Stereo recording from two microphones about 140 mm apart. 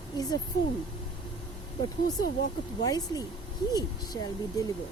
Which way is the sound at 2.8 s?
25° left (ahead or behind).